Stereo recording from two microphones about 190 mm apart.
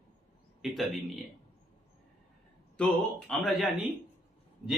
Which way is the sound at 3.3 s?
Centre (ahead or behind).